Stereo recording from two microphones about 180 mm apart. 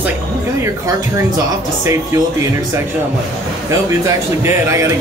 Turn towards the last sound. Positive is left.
turn(degrees=-15)  # may be behind; listen again after turning